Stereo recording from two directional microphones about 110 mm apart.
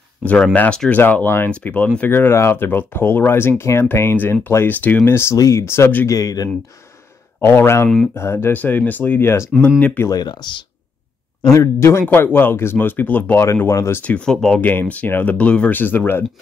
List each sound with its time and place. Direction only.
0.2 s speech: 10° left (ahead or behind)
6.0 s speech: 35° left (ahead or behind)
7.3 s speech: 20° left (ahead or behind)
10.0 s speech: 40° left (ahead or behind)
11.4 s speech: 30° left (ahead or behind)
14.0 s speech: 10° left (ahead or behind)